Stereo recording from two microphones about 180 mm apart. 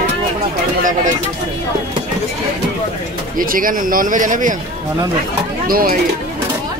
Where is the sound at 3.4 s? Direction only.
50° right (ahead or behind).